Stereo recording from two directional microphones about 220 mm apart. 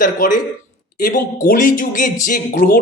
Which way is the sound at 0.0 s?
35° left (ahead or behind).